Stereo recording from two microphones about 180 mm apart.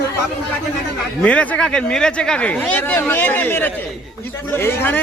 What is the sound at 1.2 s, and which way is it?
Speech, 5° left (ahead or behind).